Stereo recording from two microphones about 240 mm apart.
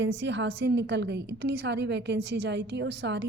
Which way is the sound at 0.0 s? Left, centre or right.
Right.